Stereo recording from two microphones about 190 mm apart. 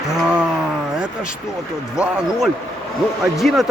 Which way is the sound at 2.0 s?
5° right (ahead or behind).